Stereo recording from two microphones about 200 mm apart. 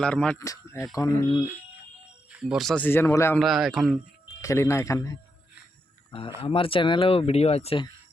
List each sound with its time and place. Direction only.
0.0 s a man's voice: 5° left (ahead or behind)
0.3 s speech: 15° left (ahead or behind)
2.3 s speech: 5° right (ahead or behind); by 3.3 s 10° left (ahead or behind)
3.3 s a man's voice: centre (ahead or behind)
4.4 s speech: 15° left (ahead or behind)
6.1 s speech: 25° left (ahead or behind)